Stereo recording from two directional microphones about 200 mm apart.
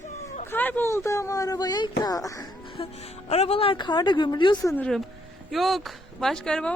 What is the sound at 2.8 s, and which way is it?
A woman's voice, 30° left (ahead or behind).